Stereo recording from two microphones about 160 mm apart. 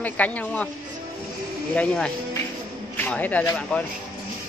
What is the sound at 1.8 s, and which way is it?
Speech, 5° left (ahead or behind).